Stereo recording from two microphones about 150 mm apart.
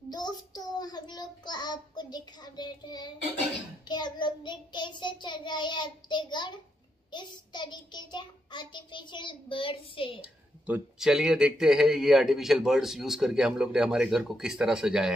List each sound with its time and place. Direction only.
0.1 s child singing: 25° left (ahead or behind)
3.9 s a child's voice: 30° left (ahead or behind)
10.2 s speech: 5° right (ahead or behind)